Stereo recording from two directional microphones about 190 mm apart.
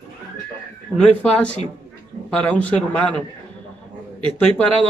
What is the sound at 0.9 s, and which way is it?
A man's voice, 5° left (ahead or behind).